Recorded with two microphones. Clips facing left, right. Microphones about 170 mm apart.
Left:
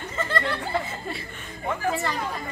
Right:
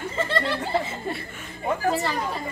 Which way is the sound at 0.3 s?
25° right (ahead or behind).